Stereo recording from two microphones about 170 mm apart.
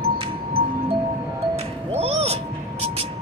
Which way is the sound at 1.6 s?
35° right (ahead or behind).